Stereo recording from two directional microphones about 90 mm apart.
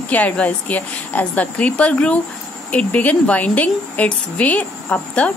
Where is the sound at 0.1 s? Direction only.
15° left (ahead or behind).